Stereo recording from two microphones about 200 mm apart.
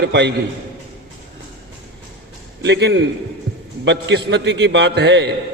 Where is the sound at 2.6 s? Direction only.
60° right (ahead or behind).